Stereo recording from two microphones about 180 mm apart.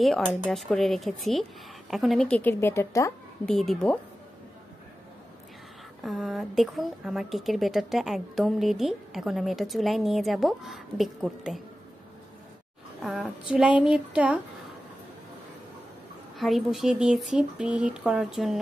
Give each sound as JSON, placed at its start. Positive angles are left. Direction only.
{"t": 0.0, "sound": "a woman's voice", "side_deg": 0}
{"t": 3.4, "sound": "a woman's voice", "side_deg": 5}
{"t": 6.0, "sound": "a woman's voice", "side_deg": 0}
{"t": 13.0, "sound": "a woman's voice", "side_deg": 0}
{"t": 16.3, "sound": "a woman's voice", "side_deg": 0}